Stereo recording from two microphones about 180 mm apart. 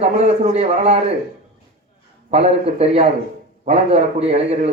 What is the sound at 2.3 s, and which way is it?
A man's voice, 35° right (ahead or behind).